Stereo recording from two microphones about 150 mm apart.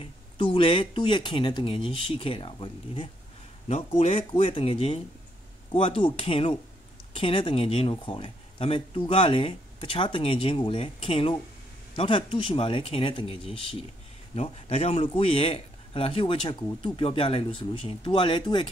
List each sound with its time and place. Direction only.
0.0 s speech: 35° left (ahead or behind)